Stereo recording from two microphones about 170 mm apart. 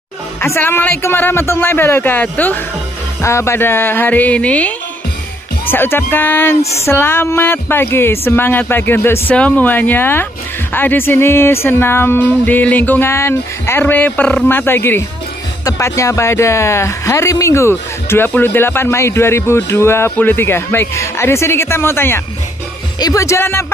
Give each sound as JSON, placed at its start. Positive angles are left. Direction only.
{"t": 0.4, "sound": "speech", "side_deg": 15}